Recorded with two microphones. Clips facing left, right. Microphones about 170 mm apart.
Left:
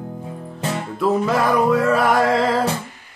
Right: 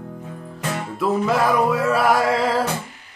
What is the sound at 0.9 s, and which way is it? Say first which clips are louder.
Music: left 1 dB; centre (ahead or behind).